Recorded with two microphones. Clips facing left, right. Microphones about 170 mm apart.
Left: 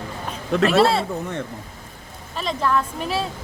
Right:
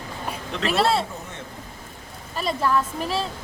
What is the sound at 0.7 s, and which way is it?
Speech, centre (ahead or behind).